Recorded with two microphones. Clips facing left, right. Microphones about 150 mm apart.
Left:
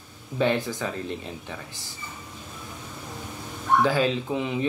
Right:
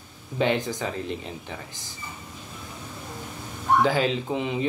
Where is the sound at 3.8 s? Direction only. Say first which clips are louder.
Left 1 dB; 20° right (ahead or behind).